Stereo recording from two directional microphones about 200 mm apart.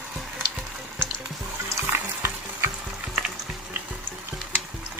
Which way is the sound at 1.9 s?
10° right (ahead or behind).